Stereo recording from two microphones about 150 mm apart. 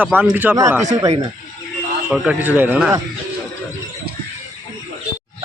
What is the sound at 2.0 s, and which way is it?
Speech, 10° right (ahead or behind).